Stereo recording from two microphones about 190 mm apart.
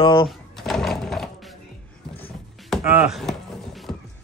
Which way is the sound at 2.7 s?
5° right (ahead or behind).